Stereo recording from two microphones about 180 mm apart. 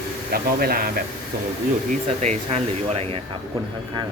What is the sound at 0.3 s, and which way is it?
Speech, 55° right (ahead or behind).